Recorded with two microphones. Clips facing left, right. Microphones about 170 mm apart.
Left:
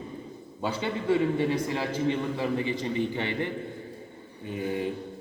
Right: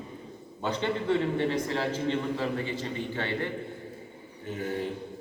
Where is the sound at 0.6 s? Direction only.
5° left (ahead or behind).